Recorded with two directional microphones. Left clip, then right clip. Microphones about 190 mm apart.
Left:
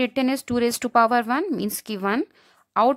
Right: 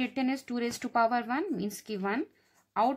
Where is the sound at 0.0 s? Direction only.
40° left (ahead or behind).